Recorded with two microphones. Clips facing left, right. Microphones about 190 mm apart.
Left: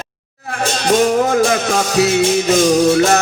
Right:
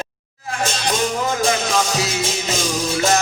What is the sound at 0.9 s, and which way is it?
Music, 60° left (ahead or behind).